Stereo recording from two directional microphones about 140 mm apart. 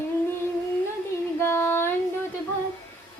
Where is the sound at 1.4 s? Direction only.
15° left (ahead or behind).